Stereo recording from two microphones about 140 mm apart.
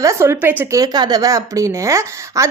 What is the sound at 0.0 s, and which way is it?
A woman's voice, 20° right (ahead or behind).